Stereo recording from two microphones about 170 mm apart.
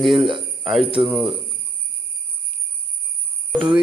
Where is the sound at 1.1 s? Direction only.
5° right (ahead or behind).